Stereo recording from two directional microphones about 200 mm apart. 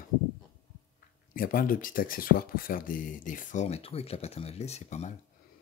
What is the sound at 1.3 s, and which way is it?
Speech, 45° left (ahead or behind).